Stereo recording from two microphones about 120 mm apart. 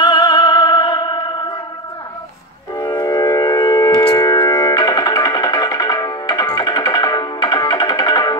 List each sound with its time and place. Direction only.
0.0 s music: 35° left (ahead or behind)
2.7 s music: 25° left (ahead or behind)